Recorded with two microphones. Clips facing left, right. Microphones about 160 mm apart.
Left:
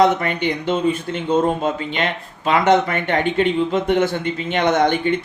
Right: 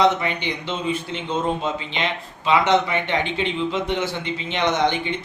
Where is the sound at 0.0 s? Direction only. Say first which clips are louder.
Left 3 dB; 50° left (ahead or behind).